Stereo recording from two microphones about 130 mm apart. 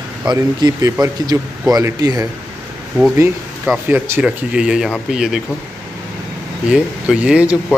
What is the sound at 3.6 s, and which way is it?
Speech, 5° right (ahead or behind).